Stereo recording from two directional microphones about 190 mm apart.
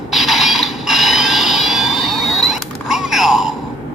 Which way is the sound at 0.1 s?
Centre (ahead or behind).